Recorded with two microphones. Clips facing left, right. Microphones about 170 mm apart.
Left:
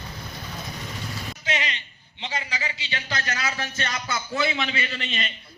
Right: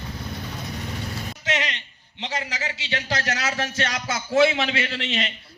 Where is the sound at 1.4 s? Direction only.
75° right (ahead or behind).